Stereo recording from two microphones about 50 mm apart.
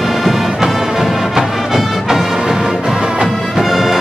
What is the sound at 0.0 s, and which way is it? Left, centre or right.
Music, centre.